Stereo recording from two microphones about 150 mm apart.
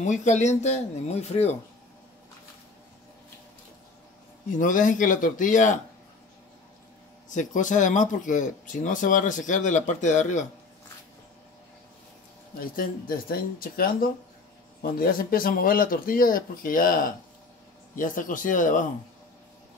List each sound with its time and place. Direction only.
0.0 s speech: 55° left (ahead or behind)
4.5 s speech: 60° left (ahead or behind)
7.2 s speech: 55° left (ahead or behind)
12.5 s speech: 70° left (ahead or behind)